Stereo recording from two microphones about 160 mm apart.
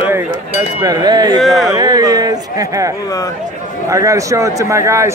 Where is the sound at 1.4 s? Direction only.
Centre (ahead or behind).